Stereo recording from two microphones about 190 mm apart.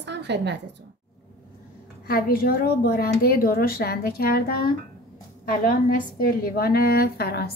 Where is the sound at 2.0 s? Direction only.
50° left (ahead or behind).